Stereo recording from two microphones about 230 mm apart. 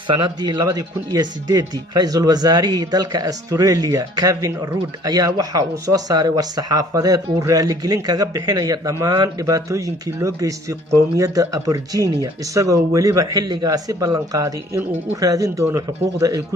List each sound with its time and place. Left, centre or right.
0.1 s speech: centre